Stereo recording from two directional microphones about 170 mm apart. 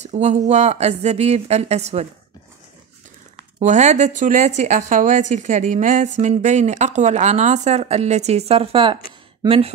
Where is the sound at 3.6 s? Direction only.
45° right (ahead or behind).